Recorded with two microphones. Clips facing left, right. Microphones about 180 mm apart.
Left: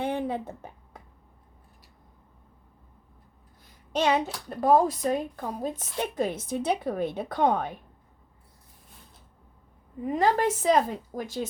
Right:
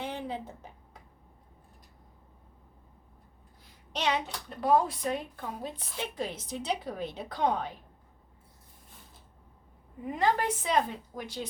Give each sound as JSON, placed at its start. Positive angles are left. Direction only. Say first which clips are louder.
{"t": 0.0, "sound": "a sound", "louder": "left 7 dB", "side_deg": 55}
{"t": 3.9, "sound": "a woman's voice", "louder": "left 6 dB", "side_deg": 45}
{"t": 10.2, "sound": "speech", "louder": "left 4 dB", "side_deg": 40}